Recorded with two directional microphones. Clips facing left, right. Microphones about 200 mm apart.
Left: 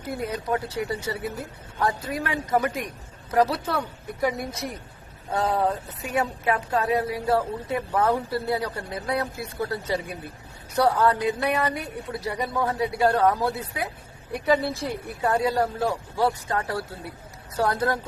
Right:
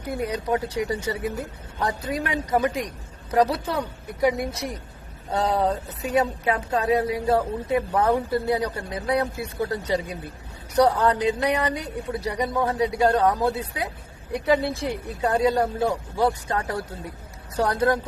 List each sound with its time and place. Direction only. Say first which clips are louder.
0.0 s speech: right 2 dB; 20° right (ahead or behind)
14.8 s speech: right 2 dB; 20° right (ahead or behind)